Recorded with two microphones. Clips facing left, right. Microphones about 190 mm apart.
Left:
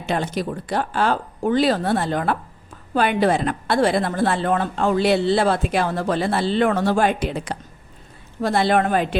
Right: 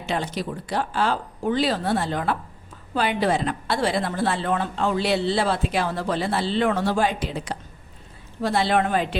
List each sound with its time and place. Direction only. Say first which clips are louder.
0.0 s a woman's voice: left 3 dB; 50° left (ahead or behind)